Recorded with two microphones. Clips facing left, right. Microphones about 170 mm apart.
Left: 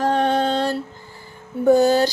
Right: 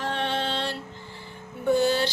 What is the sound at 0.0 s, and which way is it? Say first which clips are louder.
Music: left 9 dB; 40° left (ahead or behind).